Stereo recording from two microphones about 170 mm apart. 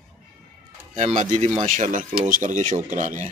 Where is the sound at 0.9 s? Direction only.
45° right (ahead or behind).